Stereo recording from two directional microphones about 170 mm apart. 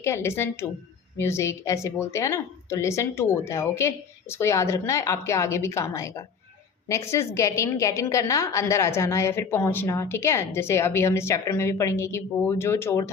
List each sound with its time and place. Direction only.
0.0 s a woman's voice: 15° left (ahead or behind)